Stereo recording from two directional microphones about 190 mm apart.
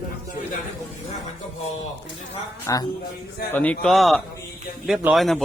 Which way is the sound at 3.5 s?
10° left (ahead or behind).